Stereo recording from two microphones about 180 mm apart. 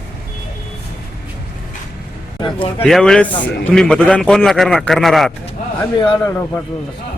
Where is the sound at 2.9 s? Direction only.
5° left (ahead or behind).